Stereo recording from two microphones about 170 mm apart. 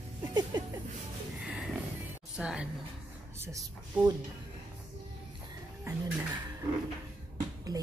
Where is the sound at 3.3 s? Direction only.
15° right (ahead or behind).